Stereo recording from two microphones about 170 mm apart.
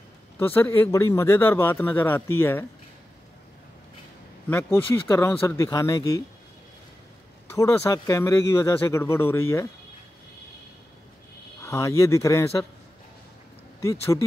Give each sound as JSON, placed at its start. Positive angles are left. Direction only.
{"t": 0.4, "sound": "a man's voice", "side_deg": 10}
{"t": 4.5, "sound": "a man's voice", "side_deg": 10}
{"t": 7.4, "sound": "a man's voice", "side_deg": 15}
{"t": 11.6, "sound": "a man's voice", "side_deg": 15}